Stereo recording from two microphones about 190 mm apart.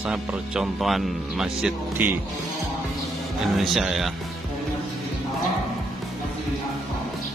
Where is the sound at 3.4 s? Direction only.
Centre (ahead or behind).